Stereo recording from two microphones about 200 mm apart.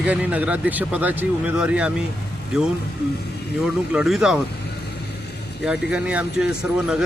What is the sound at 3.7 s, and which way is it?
Speech, centre (ahead or behind).